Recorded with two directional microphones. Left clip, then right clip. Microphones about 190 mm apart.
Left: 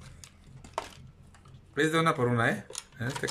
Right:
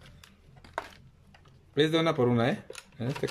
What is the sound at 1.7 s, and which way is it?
Speech, 15° right (ahead or behind).